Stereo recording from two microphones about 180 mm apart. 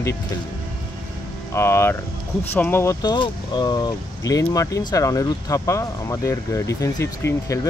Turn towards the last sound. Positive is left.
turn(degrees=15)  # may be behind; listen again after turning